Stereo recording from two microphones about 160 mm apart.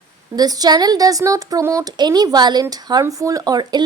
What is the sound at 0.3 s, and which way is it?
Speech, 25° right (ahead or behind).